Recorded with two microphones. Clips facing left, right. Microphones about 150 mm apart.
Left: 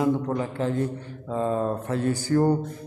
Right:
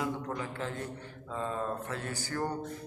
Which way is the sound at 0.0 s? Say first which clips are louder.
Left 11 dB; 35° left (ahead or behind).